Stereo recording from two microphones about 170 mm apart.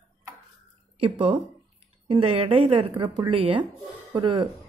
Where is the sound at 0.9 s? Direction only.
30° right (ahead or behind).